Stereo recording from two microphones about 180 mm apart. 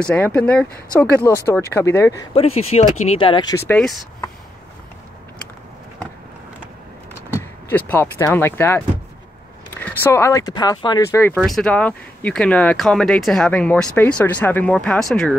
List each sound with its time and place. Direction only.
0.0 s speech: 10° left (ahead or behind)
2.3 s speech: 35° left (ahead or behind)
3.6 s speech: 5° left (ahead or behind)
7.3 s speech: 10° left (ahead or behind)
11.3 s speech: centre (ahead or behind)